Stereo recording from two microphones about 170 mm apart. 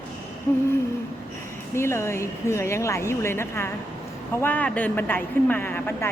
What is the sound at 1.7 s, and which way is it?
Speech, 15° left (ahead or behind).